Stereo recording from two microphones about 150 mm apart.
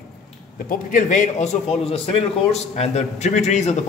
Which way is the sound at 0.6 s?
60° left (ahead or behind).